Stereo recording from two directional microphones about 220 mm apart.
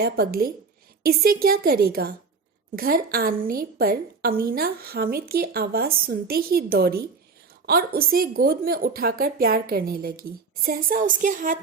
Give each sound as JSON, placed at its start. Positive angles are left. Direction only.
{"t": 0.0, "sound": "a woman's voice", "side_deg": -45}